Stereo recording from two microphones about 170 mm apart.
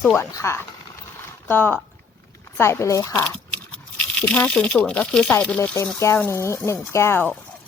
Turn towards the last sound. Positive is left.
turn(degrees=15)  # may be behind; listen again after turning